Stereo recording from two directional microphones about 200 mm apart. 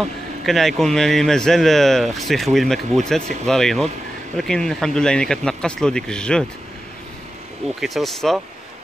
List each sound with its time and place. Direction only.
0.5 s speech: centre (ahead or behind)
7.6 s speech: centre (ahead or behind)